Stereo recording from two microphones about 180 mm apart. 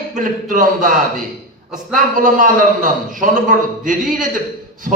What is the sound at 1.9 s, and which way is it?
A man's voice, 45° right (ahead or behind).